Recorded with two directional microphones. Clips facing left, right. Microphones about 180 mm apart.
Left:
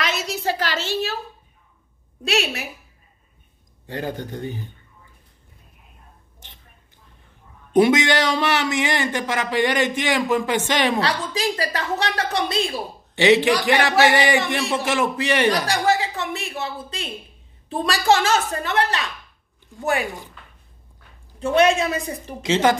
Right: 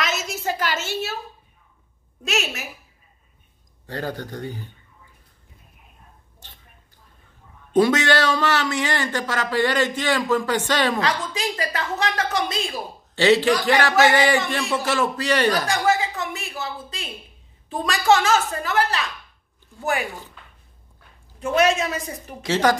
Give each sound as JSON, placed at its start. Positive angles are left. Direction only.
{"t": 0.0, "sound": "a sound", "side_deg": 35}
{"t": 2.2, "sound": "a woman's voice", "side_deg": 35}
{"t": 3.8, "sound": "a man's voice", "side_deg": 20}
{"t": 7.7, "sound": "speech", "side_deg": 15}
{"t": 11.0, "sound": "a woman's voice", "side_deg": 35}
{"t": 13.1, "sound": "a man's voice", "side_deg": 15}
{"t": 15.6, "sound": "a woman's voice", "side_deg": 35}
{"t": 21.4, "sound": "a woman's voice", "side_deg": 30}
{"t": 22.4, "sound": "a man's voice", "side_deg": 20}